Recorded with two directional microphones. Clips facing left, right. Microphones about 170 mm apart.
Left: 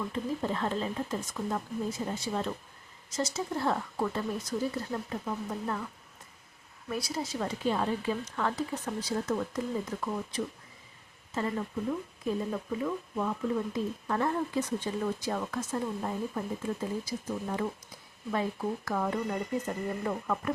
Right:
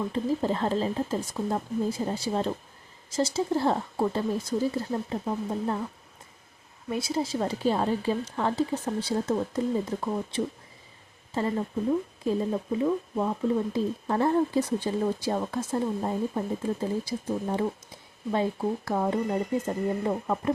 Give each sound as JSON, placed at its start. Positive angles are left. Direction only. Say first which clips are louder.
{"t": 0.0, "sound": "speech", "louder": "right 5 dB", "side_deg": -30}